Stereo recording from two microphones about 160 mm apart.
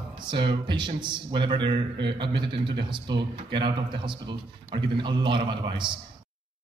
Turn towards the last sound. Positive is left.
turn(degrees=-30)  # may be behind; listen again after turning